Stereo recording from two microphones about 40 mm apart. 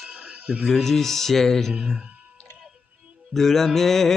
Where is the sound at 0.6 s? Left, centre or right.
Centre.